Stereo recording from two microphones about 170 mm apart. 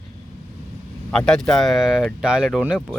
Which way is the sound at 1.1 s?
5° left (ahead or behind).